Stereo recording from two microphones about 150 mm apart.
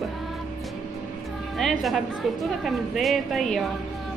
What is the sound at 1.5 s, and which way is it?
A woman's voice, centre (ahead or behind).